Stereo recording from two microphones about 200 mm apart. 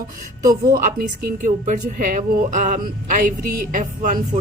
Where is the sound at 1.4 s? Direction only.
40° right (ahead or behind).